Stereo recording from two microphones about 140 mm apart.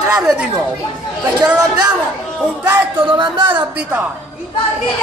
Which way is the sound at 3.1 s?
35° right (ahead or behind).